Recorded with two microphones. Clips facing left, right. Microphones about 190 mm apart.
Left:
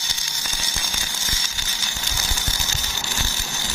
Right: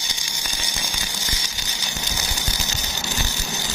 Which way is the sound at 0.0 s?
15° right (ahead or behind).